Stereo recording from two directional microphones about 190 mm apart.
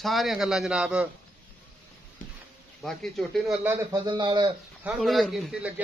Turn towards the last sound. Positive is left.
turn(degrees=-5)  # may be behind; listen again after turning